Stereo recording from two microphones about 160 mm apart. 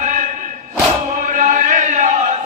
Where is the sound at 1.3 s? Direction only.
55° right (ahead or behind).